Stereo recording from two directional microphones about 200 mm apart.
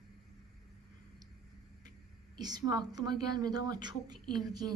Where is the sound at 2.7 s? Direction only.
20° right (ahead or behind).